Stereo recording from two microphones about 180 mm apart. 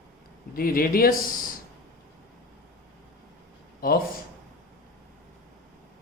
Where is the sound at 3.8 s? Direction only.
50° left (ahead or behind).